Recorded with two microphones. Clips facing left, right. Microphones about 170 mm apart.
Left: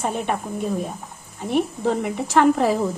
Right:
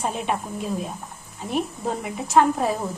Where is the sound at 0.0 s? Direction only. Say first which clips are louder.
Left 2 dB; 55° left (ahead or behind).